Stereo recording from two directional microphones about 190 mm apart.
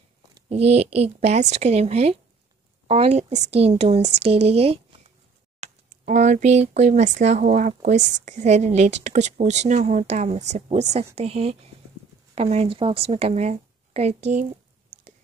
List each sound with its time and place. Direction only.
0.5 s speech: 35° right (ahead or behind)
4.5 s a sound: 35° right (ahead or behind)
5.6 s speech: 40° right (ahead or behind)